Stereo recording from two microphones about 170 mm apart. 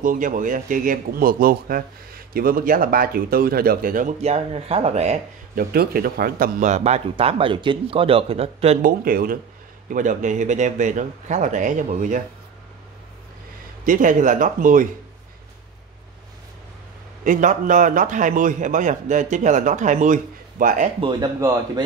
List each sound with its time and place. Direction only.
0.0 s speech: 50° right (ahead or behind)
4.2 s speech: 35° right (ahead or behind)
5.5 s speech: 60° right (ahead or behind); by 8.7 s 35° right (ahead or behind)
8.8 s a man's voice: 55° right (ahead or behind)
13.8 s a man's voice: 50° right (ahead or behind)
17.2 s a man's voice: 50° right (ahead or behind)
21.0 s speech: 25° right (ahead or behind)